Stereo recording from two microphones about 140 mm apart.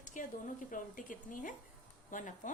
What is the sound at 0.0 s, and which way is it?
A woman's voice, 65° left (ahead or behind).